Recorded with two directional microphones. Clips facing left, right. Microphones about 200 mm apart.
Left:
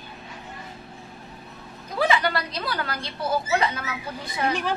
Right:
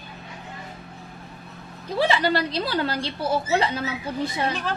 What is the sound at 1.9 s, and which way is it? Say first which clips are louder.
A woman's voice: right 2 dB; 30° right (ahead or behind).